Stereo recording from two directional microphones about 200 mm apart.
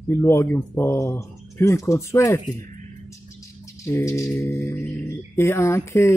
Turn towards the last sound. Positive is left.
turn(degrees=15)  # may be behind; listen again after turning